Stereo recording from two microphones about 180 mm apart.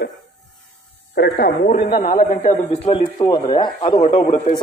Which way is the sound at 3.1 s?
20° left (ahead or behind).